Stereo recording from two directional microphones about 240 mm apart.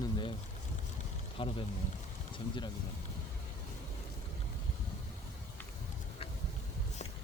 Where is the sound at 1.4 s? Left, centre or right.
Left.